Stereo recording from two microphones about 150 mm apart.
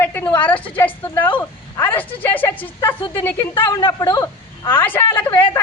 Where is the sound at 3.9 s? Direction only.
25° left (ahead or behind).